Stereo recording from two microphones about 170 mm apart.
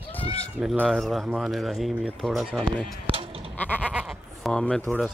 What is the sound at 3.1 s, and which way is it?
Sheep, 35° right (ahead or behind).